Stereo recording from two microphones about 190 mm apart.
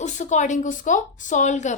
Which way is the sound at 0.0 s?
40° left (ahead or behind).